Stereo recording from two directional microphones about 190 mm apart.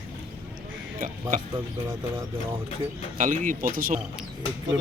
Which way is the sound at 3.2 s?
45° right (ahead or behind).